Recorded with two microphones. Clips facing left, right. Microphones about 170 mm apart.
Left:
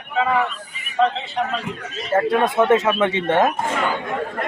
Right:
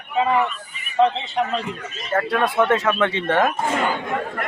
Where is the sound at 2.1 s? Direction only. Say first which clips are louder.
Left 2 dB; 20° left (ahead or behind).